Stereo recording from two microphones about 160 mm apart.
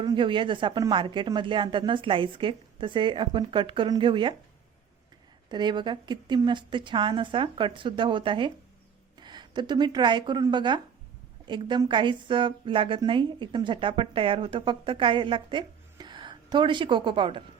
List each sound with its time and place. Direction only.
0.0 s a woman's voice: 30° right (ahead or behind)
5.5 s a woman's voice: 30° right (ahead or behind)